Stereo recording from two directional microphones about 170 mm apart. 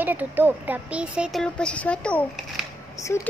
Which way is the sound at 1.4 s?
5° left (ahead or behind).